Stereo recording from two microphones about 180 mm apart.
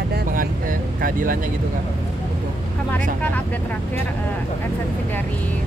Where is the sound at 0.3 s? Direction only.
50° right (ahead or behind).